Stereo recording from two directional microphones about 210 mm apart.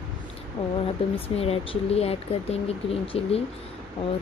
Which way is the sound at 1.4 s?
30° left (ahead or behind).